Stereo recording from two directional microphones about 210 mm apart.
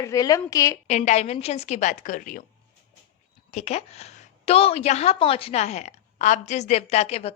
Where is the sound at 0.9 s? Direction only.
35° left (ahead or behind).